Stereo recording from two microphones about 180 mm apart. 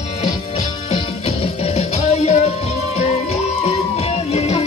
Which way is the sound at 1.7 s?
40° left (ahead or behind).